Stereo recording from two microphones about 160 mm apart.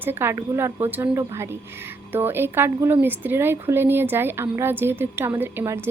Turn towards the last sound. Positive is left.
turn(degrees=-15)  # may be behind; listen again after turning